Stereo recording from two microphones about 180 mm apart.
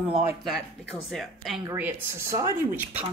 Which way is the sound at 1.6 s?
15° right (ahead or behind).